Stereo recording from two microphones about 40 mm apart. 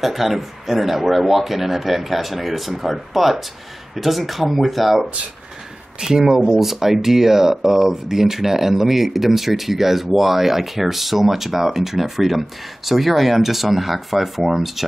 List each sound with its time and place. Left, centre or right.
0.0 s speech: centre
5.9 s speech: centre